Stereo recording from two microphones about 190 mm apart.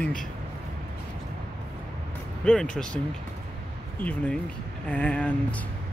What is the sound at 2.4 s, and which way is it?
Speech, 5° left (ahead or behind).